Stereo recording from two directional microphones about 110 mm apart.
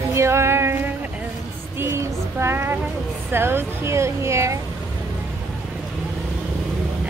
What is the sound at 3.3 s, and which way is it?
Speech, 20° right (ahead or behind).